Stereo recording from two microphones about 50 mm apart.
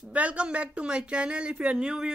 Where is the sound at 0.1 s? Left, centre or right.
Right.